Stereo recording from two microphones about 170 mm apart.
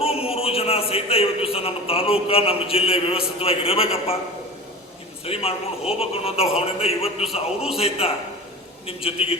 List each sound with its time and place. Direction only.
0.0 s a man's voice: 35° left (ahead or behind)
5.2 s a man's voice: 35° left (ahead or behind)